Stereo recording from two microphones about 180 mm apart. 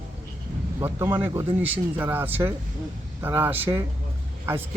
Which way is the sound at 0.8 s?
10° right (ahead or behind).